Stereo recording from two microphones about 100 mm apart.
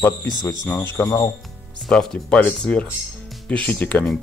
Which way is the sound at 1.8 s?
10° left (ahead or behind).